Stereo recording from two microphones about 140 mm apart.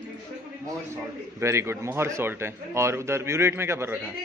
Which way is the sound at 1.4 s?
20° right (ahead or behind).